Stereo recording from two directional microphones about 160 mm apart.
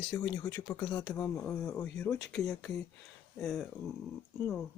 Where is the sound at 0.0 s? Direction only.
30° left (ahead or behind).